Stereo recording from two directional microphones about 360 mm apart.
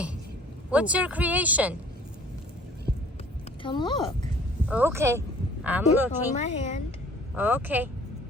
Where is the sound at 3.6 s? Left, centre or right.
Centre.